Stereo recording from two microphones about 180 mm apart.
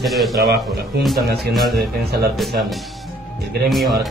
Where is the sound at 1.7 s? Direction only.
65° right (ahead or behind).